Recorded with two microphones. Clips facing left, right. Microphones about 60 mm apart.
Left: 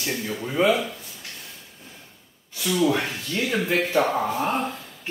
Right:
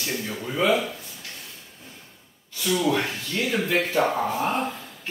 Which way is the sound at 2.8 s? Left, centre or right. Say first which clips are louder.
Left 5 dB; left.